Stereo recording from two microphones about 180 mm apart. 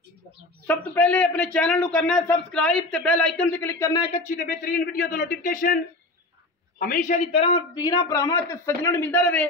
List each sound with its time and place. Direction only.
0.7 s a man's voice: 10° left (ahead or behind)
4.4 s a man's voice: 50° left (ahead or behind)
6.8 s a man's voice: 50° left (ahead or behind); by 9.5 s 5° left (ahead or behind)